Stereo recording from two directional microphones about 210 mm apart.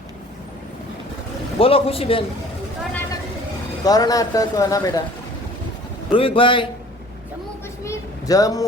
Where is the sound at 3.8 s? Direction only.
20° left (ahead or behind).